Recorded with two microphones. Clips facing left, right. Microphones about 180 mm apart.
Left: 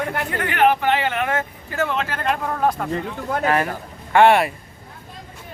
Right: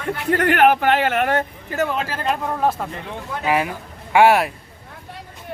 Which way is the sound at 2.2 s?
5° right (ahead or behind).